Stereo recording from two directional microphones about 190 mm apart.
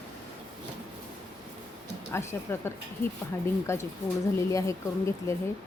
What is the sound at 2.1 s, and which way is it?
Speech, 10° left (ahead or behind).